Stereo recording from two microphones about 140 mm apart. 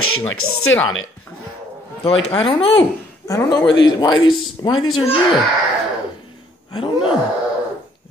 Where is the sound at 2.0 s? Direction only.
40° left (ahead or behind).